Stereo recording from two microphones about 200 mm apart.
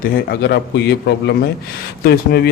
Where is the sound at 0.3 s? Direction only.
55° left (ahead or behind).